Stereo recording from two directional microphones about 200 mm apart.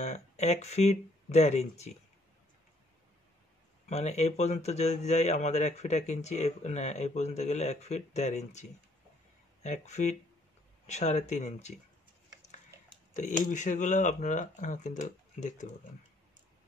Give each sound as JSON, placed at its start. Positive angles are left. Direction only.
{"t": 0.0, "sound": "speech", "side_deg": 35}
{"t": 3.9, "sound": "speech", "side_deg": 35}
{"t": 13.1, "sound": "speech", "side_deg": 35}